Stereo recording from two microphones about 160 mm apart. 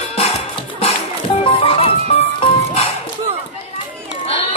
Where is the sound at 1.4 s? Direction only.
35° left (ahead or behind).